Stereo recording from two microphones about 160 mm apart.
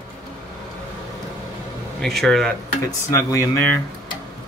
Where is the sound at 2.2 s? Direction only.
Centre (ahead or behind).